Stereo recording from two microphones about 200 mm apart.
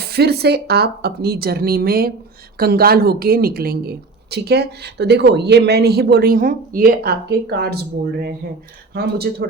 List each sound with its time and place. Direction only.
0.0 s speech: 50° right (ahead or behind)